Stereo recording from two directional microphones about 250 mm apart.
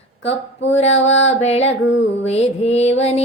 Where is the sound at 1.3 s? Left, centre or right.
Left.